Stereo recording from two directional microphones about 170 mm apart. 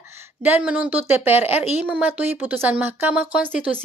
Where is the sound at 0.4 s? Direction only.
10° right (ahead or behind).